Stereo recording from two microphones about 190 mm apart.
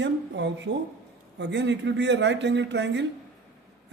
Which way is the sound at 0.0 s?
70° right (ahead or behind).